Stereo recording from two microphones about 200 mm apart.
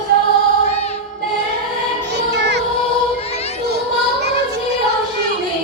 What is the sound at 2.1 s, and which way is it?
Music, 60° right (ahead or behind).